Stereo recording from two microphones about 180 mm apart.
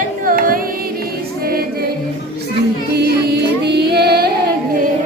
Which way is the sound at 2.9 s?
70° right (ahead or behind).